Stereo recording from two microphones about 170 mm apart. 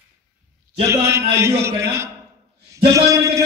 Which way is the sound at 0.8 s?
15° right (ahead or behind).